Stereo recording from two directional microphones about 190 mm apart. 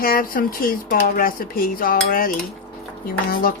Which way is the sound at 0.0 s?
50° left (ahead or behind).